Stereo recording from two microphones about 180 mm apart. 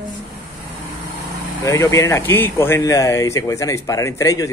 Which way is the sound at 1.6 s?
15° left (ahead or behind).